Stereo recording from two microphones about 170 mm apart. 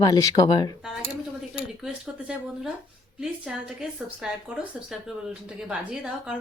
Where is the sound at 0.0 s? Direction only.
20° left (ahead or behind).